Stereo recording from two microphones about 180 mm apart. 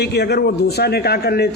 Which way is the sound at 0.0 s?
65° left (ahead or behind).